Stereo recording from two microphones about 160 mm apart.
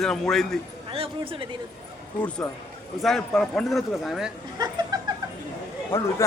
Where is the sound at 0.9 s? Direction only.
35° right (ahead or behind).